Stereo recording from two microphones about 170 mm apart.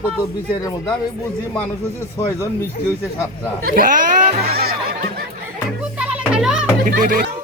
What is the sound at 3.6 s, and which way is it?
Speech, 55° right (ahead or behind).